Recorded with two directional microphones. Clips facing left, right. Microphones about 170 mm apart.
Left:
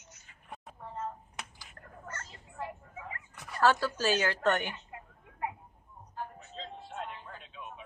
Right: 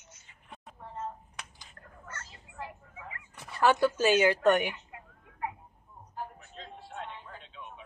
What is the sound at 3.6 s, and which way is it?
Speech, 15° right (ahead or behind).